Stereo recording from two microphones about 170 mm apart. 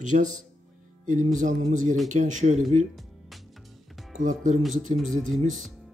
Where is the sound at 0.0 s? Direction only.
45° right (ahead or behind).